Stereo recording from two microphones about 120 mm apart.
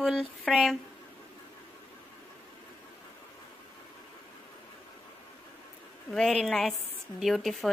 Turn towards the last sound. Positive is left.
turn(degrees=0)  # may be behind; listen again after turning